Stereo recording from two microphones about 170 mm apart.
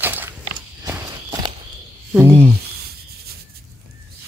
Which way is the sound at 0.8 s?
15° right (ahead or behind).